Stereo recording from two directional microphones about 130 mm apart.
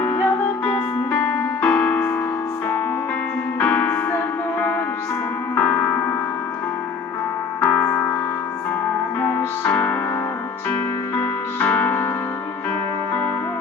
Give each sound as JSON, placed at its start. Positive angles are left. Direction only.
{"t": 0.6, "sound": "music", "side_deg": 10}
{"t": 3.6, "sound": "music", "side_deg": 15}
{"t": 5.5, "sound": "music", "side_deg": 10}
{"t": 7.6, "sound": "music", "side_deg": 15}
{"t": 9.2, "sound": "music", "side_deg": 15}